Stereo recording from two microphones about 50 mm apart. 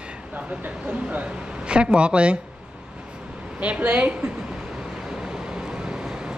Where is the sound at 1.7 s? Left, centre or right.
Centre.